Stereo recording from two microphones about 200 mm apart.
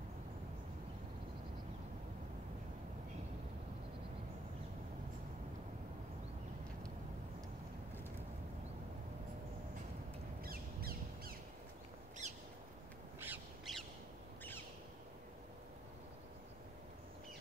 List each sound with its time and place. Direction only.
10.4 s crow: 50° right (ahead or behind)
12.2 s bird: 35° right (ahead or behind)
13.2 s crow: 10° right (ahead or behind)